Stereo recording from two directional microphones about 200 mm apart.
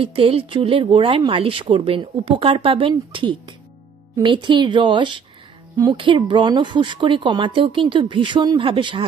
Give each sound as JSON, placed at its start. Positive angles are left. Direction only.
{"t": 0.0, "sound": "speech", "side_deg": -30}